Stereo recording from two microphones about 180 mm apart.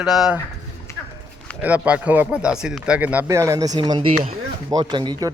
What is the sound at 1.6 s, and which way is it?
Speech, 5° right (ahead or behind).